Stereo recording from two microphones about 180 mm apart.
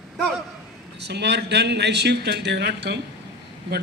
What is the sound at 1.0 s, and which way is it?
A man's voice, 70° right (ahead or behind).